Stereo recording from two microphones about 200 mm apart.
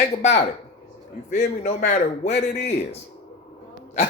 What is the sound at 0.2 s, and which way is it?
Speech, 35° left (ahead or behind).